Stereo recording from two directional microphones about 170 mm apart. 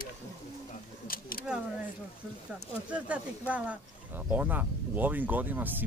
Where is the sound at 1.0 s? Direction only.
60° left (ahead or behind).